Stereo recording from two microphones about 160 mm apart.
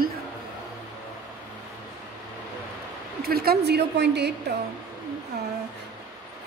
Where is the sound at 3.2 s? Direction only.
80° right.